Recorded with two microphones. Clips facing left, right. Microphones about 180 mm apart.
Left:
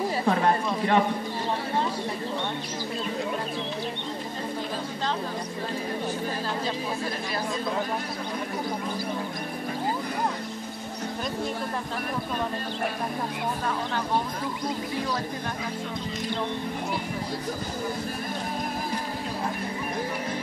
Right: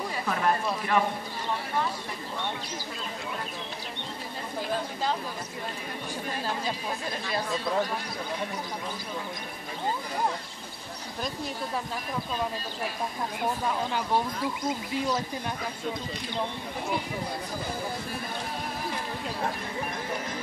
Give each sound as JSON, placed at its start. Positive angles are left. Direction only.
{"t": 0.2, "sound": "chatter", "side_deg": 30}